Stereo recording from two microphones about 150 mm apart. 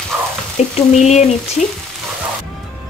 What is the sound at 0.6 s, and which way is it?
Frying, 45° left (ahead or behind).